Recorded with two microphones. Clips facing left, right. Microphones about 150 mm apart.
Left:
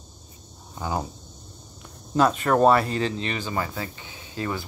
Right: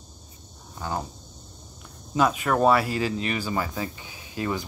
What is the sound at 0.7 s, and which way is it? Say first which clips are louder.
Speech: left 2 dB; 15° left (ahead or behind).